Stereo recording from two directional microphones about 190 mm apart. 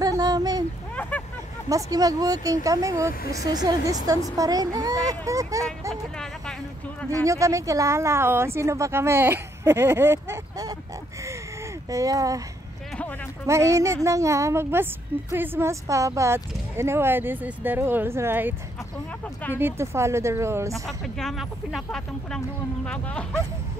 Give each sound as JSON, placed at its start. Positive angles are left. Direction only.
{"t": 0.0, "sound": "a sound", "side_deg": -20}
{"t": 1.7, "sound": "speech", "side_deg": -20}
{"t": 7.2, "sound": "speech", "side_deg": -15}
{"t": 11.9, "sound": "speech", "side_deg": -20}
{"t": 13.5, "sound": "speech", "side_deg": -15}
{"t": 19.5, "sound": "speech", "side_deg": -10}
{"t": 20.8, "sound": "speech", "side_deg": 0}